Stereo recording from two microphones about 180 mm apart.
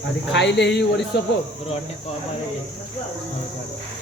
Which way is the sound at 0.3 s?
75° left (ahead or behind).